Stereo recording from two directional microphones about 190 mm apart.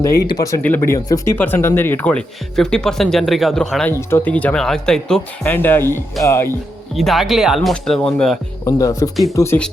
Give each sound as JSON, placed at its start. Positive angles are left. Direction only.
{"t": 0.0, "sound": "speech", "side_deg": 15}
{"t": 6.9, "sound": "speech", "side_deg": 0}
{"t": 8.6, "sound": "speech", "side_deg": 15}